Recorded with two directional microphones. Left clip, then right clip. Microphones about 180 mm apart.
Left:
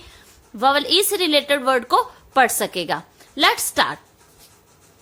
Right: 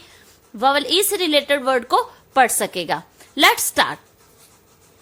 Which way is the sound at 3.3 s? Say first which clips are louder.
Right 2 dB; 15° right (ahead or behind).